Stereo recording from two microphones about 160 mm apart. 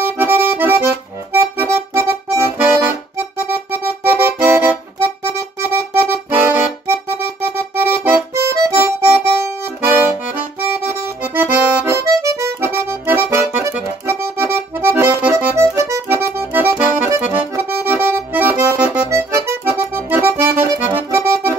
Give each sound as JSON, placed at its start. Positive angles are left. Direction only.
{"t": 0.0, "sound": "accordion", "side_deg": -15}
{"t": 3.3, "sound": "music", "side_deg": -15}
{"t": 9.8, "sound": "accordion", "side_deg": -10}